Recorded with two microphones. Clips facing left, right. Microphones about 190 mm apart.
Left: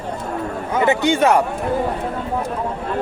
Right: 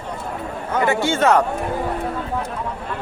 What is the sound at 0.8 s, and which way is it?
Speech, 20° left (ahead or behind).